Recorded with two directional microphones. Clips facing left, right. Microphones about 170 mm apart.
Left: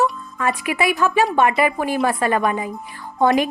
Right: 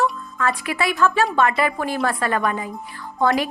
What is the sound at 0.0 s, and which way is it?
A woman's voice, 15° left (ahead or behind).